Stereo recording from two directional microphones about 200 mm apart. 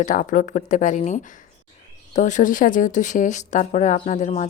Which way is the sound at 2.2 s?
40° left (ahead or behind).